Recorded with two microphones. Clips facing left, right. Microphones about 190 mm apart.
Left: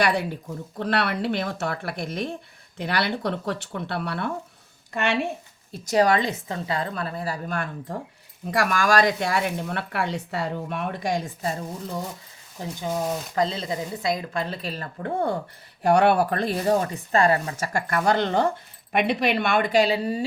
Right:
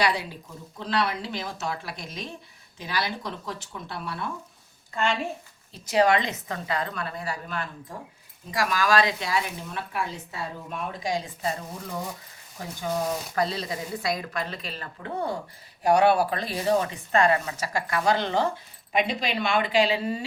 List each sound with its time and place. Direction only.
0.0 s speech: 55° left (ahead or behind)
5.9 s a woman's voice: 40° left (ahead or behind); by 11.2 s 60° left (ahead or behind)
12.8 s speech: 25° left (ahead or behind)
17.7 s speech: 50° left (ahead or behind)